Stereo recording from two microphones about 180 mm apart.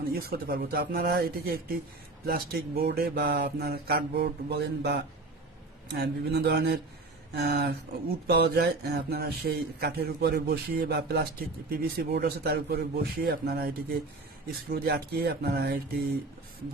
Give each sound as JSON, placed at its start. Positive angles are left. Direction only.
{"t": 0.1, "sound": "speech", "side_deg": -60}
{"t": 14.7, "sound": "speech", "side_deg": -60}